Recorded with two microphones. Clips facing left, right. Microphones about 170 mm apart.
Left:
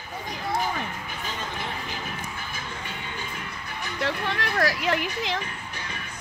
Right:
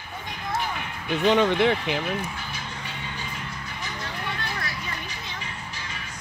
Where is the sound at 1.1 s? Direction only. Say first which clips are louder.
Right 14 dB; 75° right (ahead or behind).